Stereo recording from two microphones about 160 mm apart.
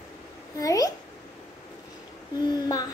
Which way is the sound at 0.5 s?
20° left (ahead or behind).